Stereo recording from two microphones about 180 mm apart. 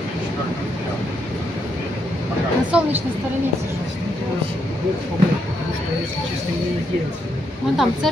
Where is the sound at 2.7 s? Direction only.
5° right (ahead or behind).